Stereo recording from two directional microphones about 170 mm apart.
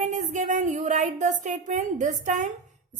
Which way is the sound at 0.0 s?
45° right (ahead or behind).